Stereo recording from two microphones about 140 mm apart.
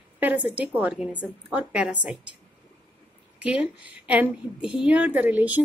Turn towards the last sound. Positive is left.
turn(degrees=-15)  # may be behind; listen again after turning